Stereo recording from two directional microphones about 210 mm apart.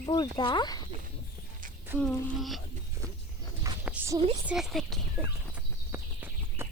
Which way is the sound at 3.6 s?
10° right (ahead or behind).